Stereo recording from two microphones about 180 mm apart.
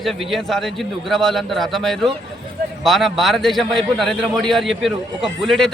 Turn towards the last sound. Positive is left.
turn(degrees=0)  # may be behind; listen again after turning